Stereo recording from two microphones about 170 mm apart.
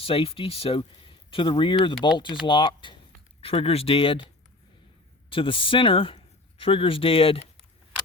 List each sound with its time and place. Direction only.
0.0 s speech: 35° left (ahead or behind)
5.3 s speech: 30° left (ahead or behind)